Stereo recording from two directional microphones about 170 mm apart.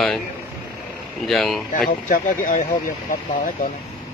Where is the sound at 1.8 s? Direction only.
55° left (ahead or behind).